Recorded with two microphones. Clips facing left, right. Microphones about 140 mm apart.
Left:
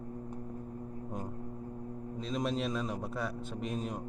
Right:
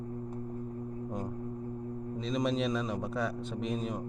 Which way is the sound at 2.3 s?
Centre (ahead or behind).